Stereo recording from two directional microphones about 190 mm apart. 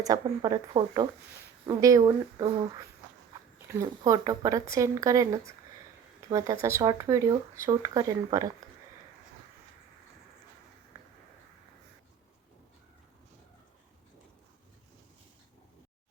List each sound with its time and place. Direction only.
0.0 s speech: 20° right (ahead or behind)
3.7 s speech: 15° right (ahead or behind)